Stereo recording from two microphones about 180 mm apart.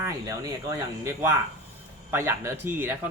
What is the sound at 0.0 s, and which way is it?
Speech, 15° right (ahead or behind).